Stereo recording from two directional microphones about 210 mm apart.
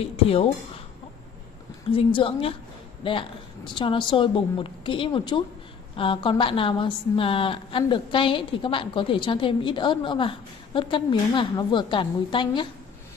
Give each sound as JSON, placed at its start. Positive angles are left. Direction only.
{"t": 0.0, "sound": "a woman's voice", "side_deg": 30}
{"t": 1.9, "sound": "a woman's voice", "side_deg": 25}